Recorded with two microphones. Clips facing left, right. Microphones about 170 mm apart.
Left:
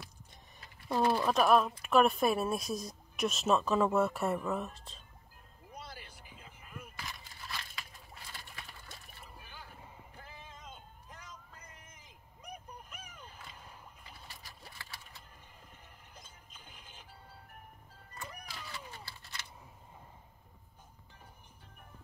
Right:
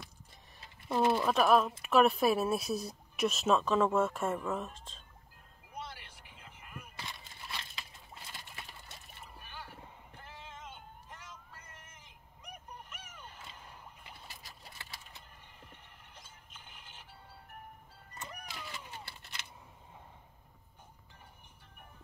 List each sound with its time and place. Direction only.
0.8 s speech: 20° right (ahead or behind)
1.2 s speech: centre (ahead or behind)
7.0 s a sound: 25° right (ahead or behind)
10.3 s music: 75° right (ahead or behind)
18.2 s cat: 20° right (ahead or behind)